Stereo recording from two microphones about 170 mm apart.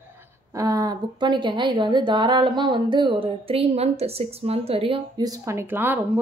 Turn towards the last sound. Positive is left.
turn(degrees=-10)  # may be behind; listen again after turning